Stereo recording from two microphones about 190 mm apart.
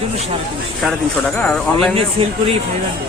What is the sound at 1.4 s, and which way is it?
Speech, centre (ahead or behind).